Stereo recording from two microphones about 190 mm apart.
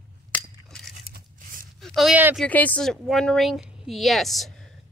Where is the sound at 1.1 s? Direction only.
50° right (ahead or behind).